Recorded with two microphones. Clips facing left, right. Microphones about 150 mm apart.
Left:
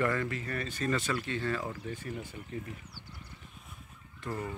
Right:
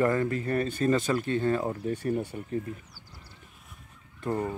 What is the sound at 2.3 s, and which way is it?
Speech, 50° right (ahead or behind).